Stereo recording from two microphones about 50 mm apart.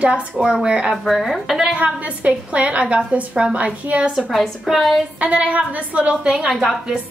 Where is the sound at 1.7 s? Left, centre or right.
Right.